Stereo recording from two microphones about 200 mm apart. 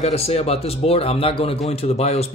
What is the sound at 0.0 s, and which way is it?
Speech, 30° left (ahead or behind).